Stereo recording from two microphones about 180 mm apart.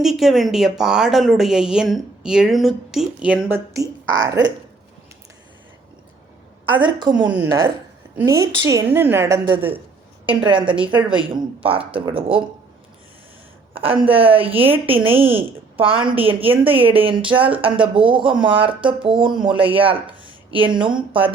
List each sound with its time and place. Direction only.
0.0 s a woman's voice: centre (ahead or behind)
3.8 s speech: 20° right (ahead or behind)
6.7 s speech: 25° right (ahead or behind)
7.3 s a woman's voice: 10° right (ahead or behind)
10.2 s speech: 30° right (ahead or behind)
13.7 s a woman's voice: 30° right (ahead or behind)